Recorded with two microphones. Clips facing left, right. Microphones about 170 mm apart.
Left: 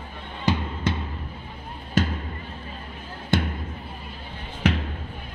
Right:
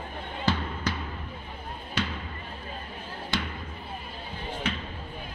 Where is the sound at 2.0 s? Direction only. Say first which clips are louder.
Left 8 dB; 45° left (ahead or behind).